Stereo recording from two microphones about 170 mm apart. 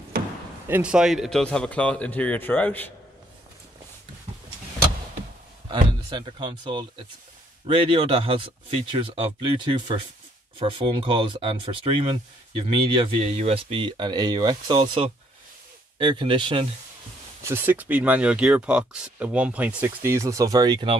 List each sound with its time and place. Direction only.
0.7 s speech: 10° right (ahead or behind); by 2.9 s 10° left (ahead or behind)
5.7 s speech: 25° right (ahead or behind)
17.4 s speech: 15° right (ahead or behind)